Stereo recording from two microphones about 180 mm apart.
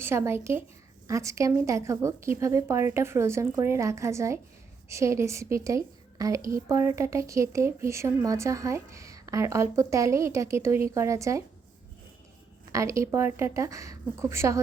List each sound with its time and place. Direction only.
0.0 s a woman's voice: 15° right (ahead or behind)
12.7 s a woman's voice: 15° right (ahead or behind)